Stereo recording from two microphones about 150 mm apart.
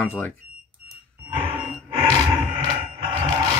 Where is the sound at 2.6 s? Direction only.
35° right (ahead or behind).